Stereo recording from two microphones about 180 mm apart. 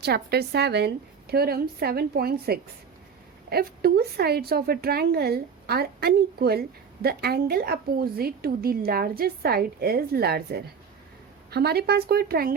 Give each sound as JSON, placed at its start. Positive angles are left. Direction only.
{"t": 0.0, "sound": "a woman's voice", "side_deg": -65}